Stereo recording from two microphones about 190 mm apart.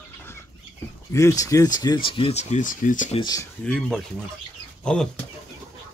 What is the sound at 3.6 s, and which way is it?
Speech, 5° left (ahead or behind).